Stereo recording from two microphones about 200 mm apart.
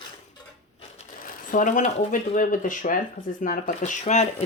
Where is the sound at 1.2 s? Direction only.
40° left (ahead or behind).